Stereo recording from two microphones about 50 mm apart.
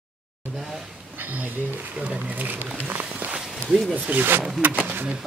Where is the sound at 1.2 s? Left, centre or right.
Right.